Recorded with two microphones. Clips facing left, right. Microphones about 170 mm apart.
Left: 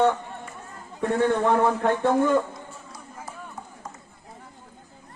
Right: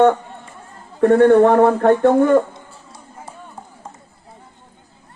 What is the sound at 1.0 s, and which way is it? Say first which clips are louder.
A man's voice: right 11 dB; 60° right (ahead or behind).